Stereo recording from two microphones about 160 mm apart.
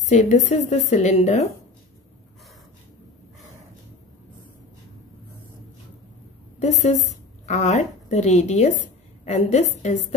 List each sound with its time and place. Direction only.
0.0 s a woman's voice: 45° left (ahead or behind)
6.6 s a woman's voice: 45° left (ahead or behind)